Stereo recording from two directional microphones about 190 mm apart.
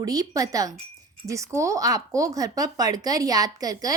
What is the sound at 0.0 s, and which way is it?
Speech, 20° right (ahead or behind).